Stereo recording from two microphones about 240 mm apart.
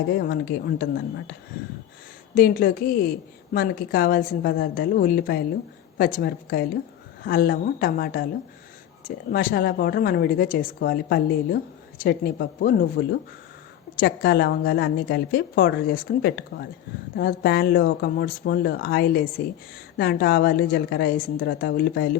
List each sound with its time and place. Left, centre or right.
0.2 s speech: left